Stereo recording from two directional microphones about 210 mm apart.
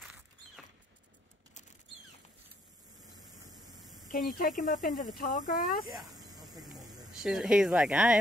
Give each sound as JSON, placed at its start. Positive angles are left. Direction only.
{"t": 3.0, "sound": "vehicle", "side_deg": -20}
{"t": 4.1, "sound": "speech", "side_deg": 40}
{"t": 5.9, "sound": "snake", "side_deg": -20}
{"t": 7.1, "sound": "speech", "side_deg": 0}